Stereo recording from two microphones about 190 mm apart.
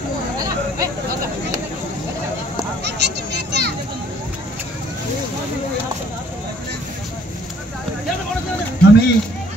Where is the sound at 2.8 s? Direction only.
65° right (ahead or behind).